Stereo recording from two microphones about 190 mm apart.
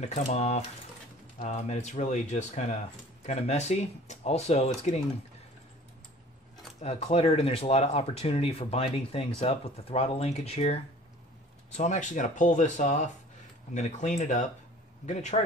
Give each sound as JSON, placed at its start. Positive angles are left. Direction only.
{"t": 0.1, "sound": "speech", "side_deg": 35}
{"t": 6.8, "sound": "speech", "side_deg": 35}